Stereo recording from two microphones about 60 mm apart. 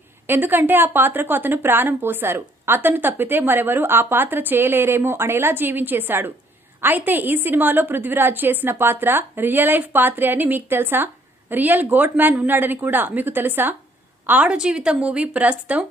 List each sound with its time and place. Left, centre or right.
0.3 s a woman's voice: right
14.4 s speech: centre